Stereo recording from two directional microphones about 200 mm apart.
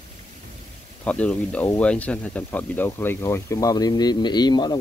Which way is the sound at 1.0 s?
5° left (ahead or behind).